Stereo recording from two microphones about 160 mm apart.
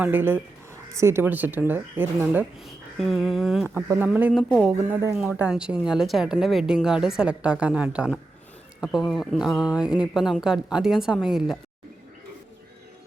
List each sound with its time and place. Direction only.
0.0 s a woman's voice: 10° right (ahead or behind)
3.8 s speech: 10° right (ahead or behind)
4.4 s a woman's voice: 5° left (ahead or behind)
4.9 s speech: 15° right (ahead or behind)
5.1 s a woman's voice: 5° right (ahead or behind)